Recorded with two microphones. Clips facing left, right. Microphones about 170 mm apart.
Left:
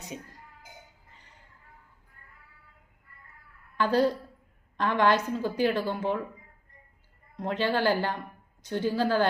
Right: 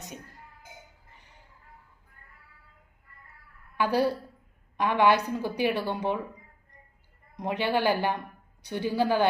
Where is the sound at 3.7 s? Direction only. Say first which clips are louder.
Left 1 dB; 10° right (ahead or behind).